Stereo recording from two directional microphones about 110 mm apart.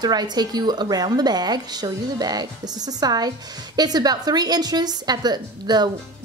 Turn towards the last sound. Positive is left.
turn(degrees=-40)  # may be behind; listen again after turning